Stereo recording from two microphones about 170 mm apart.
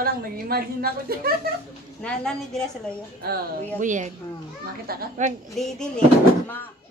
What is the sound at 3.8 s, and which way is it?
Speech, 45° right (ahead or behind).